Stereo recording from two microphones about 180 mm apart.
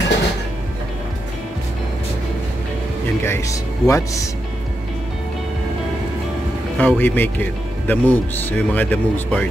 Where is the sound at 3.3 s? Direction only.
15° left (ahead or behind).